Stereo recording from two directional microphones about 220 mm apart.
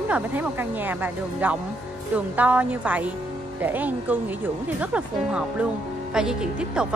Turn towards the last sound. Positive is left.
turn(degrees=-5)  # may be behind; listen again after turning